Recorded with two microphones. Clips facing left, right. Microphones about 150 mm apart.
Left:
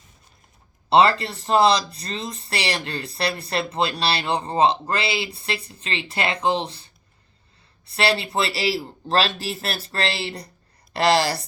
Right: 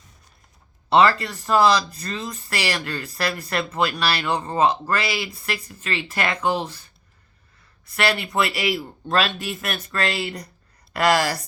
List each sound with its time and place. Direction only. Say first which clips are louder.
0.9 s speech: even; 30° left (ahead or behind)